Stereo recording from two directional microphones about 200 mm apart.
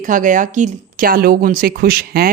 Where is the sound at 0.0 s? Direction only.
40° right (ahead or behind).